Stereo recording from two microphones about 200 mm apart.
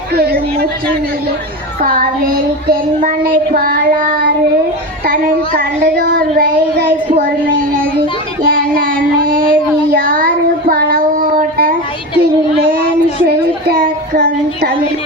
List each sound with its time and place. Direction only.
0.1 s a sound: 50° right (ahead or behind)
1.8 s child singing: 45° right (ahead or behind)
8.4 s child singing: 45° right (ahead or behind)
13.2 s child singing: 50° right (ahead or behind)